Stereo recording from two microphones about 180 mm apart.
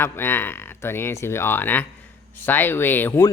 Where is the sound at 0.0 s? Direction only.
10° left (ahead or behind).